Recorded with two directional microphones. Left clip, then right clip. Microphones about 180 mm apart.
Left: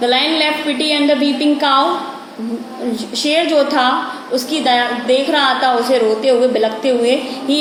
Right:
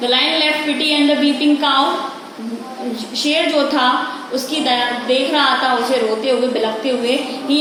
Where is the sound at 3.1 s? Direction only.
40° left (ahead or behind).